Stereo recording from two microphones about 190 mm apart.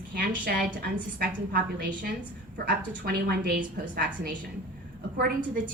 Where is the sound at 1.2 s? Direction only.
50° right (ahead or behind).